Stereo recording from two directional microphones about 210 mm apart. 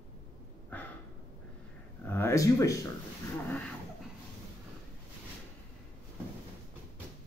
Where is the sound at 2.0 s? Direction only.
10° left (ahead or behind).